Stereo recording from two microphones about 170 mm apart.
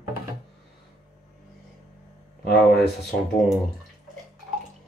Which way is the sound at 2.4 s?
70° left (ahead or behind).